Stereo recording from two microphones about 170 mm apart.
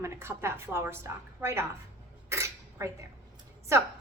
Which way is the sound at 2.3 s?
15° right (ahead or behind).